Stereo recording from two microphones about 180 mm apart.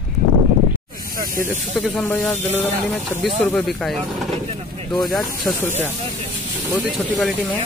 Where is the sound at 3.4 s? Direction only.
5° left (ahead or behind).